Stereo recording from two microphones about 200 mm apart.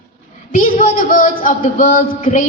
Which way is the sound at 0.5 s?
40° left (ahead or behind).